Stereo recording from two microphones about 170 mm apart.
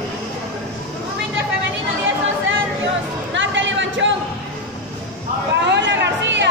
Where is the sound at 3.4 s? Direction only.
90° right.